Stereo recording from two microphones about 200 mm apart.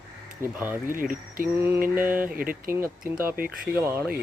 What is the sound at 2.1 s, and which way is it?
Speech, 10° right (ahead or behind).